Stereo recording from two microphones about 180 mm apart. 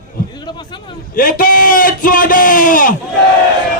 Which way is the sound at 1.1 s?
50° left (ahead or behind).